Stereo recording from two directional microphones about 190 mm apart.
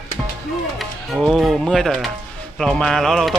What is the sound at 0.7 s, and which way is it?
Speech, centre (ahead or behind).